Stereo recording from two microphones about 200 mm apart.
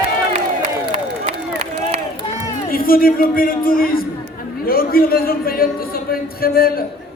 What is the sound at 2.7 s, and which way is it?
A man's voice, 45° left (ahead or behind).